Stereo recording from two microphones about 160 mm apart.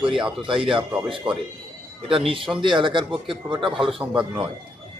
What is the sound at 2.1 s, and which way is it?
Speech, 35° right (ahead or behind).